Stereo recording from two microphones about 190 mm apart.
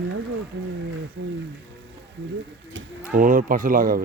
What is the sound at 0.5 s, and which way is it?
Speech, 70° right (ahead or behind).